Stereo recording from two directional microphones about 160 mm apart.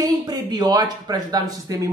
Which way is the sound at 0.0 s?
25° right (ahead or behind).